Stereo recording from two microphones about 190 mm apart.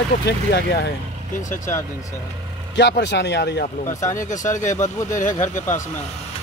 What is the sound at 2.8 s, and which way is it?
Speech, 65° left (ahead or behind).